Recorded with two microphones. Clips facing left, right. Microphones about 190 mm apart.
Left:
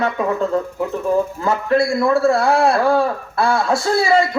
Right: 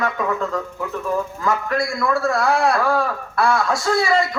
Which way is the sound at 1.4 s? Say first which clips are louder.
Left 4 dB; 30° left (ahead or behind).